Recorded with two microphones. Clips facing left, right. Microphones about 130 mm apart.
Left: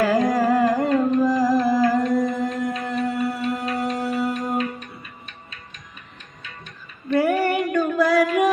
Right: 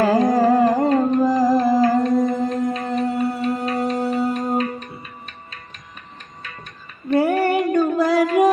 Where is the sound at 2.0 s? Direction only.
25° right (ahead or behind).